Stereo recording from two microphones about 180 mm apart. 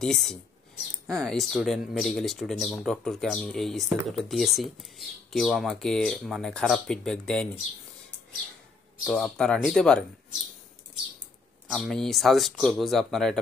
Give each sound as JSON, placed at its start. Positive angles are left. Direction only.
{"t": 0.0, "sound": "speech", "side_deg": 5}
{"t": 9.0, "sound": "speech", "side_deg": 0}
{"t": 11.7, "sound": "speech", "side_deg": 0}